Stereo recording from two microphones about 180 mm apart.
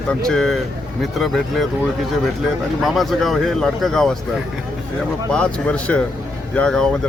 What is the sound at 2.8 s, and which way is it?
Speech, centre (ahead or behind).